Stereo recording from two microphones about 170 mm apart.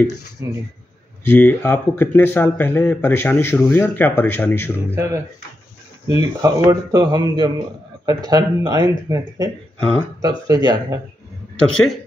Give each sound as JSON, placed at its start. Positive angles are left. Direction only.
{"t": 0.4, "sound": "speech", "side_deg": -15}
{"t": 1.3, "sound": "speech", "side_deg": 10}
{"t": 4.9, "sound": "a man's voice", "side_deg": -15}
{"t": 11.7, "sound": "speech", "side_deg": 0}